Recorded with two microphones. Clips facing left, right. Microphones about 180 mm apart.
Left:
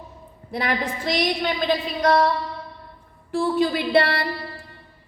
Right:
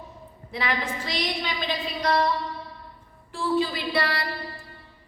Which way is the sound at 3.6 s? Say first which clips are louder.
Left 7 dB; 60° left (ahead or behind).